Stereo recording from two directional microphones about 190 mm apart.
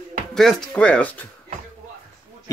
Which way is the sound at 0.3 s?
5° left (ahead or behind).